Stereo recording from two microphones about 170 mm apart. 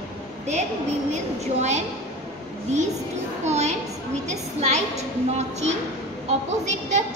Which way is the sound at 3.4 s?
40° right (ahead or behind).